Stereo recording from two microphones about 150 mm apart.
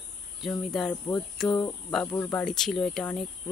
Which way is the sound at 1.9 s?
10° left (ahead or behind).